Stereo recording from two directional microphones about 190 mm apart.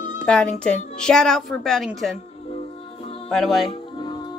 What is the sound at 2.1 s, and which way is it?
Music, 30° left (ahead or behind).